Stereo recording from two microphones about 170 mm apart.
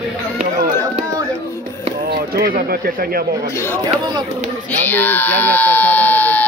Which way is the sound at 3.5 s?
15° left (ahead or behind).